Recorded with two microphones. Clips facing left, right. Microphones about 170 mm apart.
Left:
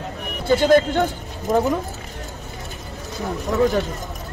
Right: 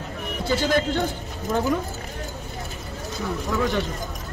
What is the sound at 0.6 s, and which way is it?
Speech, 55° left (ahead or behind).